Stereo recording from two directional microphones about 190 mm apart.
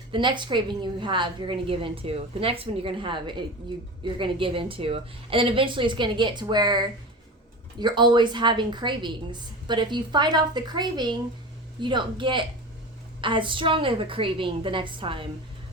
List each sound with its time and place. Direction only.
0.1 s a woman's voice: 25° right (ahead or behind)